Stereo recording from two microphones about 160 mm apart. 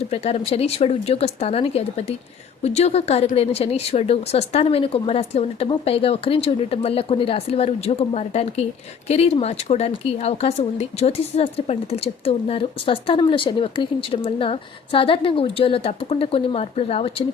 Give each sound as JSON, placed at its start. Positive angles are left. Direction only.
{"t": 0.1, "sound": "speech", "side_deg": 40}